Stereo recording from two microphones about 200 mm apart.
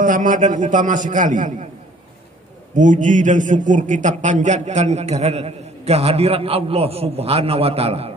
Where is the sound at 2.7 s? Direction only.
40° right (ahead or behind).